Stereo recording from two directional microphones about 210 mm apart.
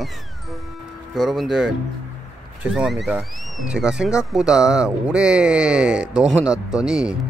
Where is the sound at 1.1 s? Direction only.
Centre (ahead or behind).